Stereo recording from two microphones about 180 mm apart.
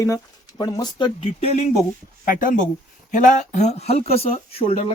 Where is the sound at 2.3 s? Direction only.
45° left (ahead or behind).